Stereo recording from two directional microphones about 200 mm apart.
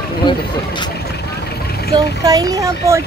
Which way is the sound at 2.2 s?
15° right (ahead or behind).